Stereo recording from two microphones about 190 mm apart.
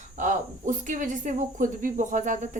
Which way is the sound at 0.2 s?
40° right (ahead or behind).